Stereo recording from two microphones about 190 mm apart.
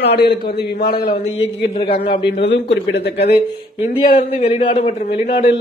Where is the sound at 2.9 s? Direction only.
60° left (ahead or behind).